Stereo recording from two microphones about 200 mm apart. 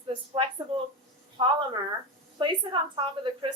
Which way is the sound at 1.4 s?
25° right (ahead or behind).